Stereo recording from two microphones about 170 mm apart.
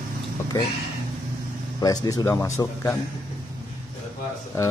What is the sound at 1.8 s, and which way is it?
Speech, 20° left (ahead or behind).